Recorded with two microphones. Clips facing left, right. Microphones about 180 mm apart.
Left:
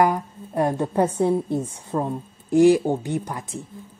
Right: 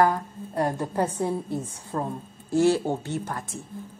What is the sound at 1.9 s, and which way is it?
A woman's voice, 10° left (ahead or behind).